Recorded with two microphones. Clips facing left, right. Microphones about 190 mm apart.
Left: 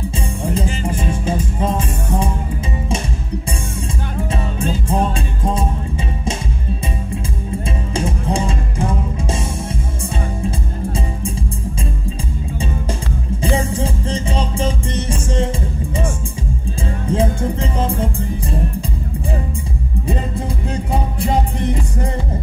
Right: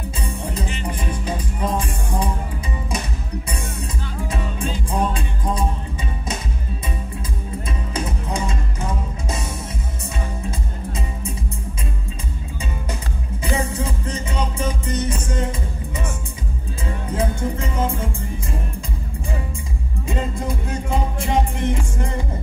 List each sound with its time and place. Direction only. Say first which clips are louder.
0.6 s music: left 6 dB; 30° left (ahead or behind)
4.3 s music: left 4 dB; 25° left (ahead or behind)
7.9 s music: left 6 dB; 30° left (ahead or behind)
13.4 s music: left 4 dB; 30° left (ahead or behind)
17.1 s music: left 5 dB; 30° left (ahead or behind)
20.1 s music: left 1 dB; 35° left (ahead or behind)